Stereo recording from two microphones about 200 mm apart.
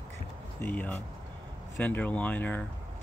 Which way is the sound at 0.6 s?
10° left (ahead or behind).